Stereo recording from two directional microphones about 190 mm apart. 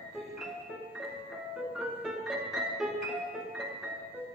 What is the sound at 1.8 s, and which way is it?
Music, 5° right (ahead or behind).